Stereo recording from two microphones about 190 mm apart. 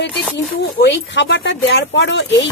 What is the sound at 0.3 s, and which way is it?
Speech, 65° left (ahead or behind).